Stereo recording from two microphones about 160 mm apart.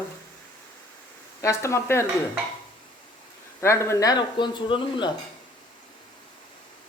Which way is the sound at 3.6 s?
15° left (ahead or behind).